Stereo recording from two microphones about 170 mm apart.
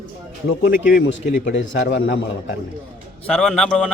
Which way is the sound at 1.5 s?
90° left.